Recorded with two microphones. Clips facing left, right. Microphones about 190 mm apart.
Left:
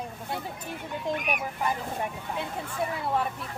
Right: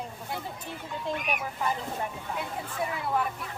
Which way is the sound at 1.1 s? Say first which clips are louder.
Left 2 dB; 15° left (ahead or behind).